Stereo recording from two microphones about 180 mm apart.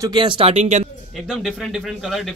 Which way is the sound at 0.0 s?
25° right (ahead or behind).